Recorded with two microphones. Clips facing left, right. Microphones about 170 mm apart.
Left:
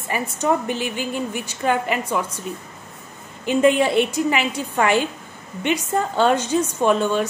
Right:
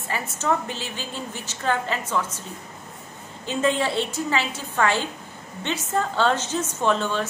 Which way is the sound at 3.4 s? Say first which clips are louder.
Left 6 dB; 15° left (ahead or behind).